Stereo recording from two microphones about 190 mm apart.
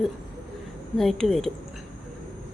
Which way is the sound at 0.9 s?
Centre (ahead or behind).